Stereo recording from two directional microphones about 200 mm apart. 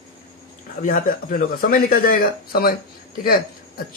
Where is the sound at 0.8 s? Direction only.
45° left (ahead or behind).